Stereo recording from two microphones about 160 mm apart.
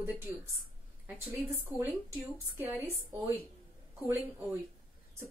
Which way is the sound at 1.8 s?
15° right (ahead or behind).